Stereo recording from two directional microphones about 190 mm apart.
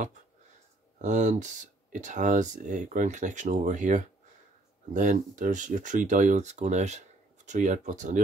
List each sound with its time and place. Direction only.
1.0 s speech: 40° right (ahead or behind)